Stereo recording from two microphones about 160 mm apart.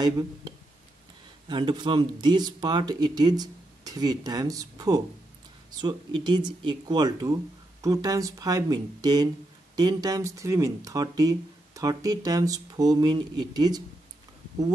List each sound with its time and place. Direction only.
1.5 s speech: 30° right (ahead or behind)